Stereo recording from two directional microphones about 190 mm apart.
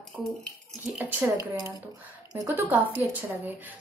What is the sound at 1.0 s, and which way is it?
A woman's voice, 10° right (ahead or behind).